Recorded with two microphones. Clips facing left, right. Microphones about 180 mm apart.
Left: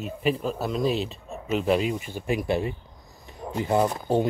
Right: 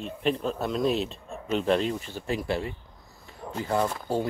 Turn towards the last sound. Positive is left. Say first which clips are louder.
# left 4 dB
turn(degrees=20)  # may be behind; listen again after turning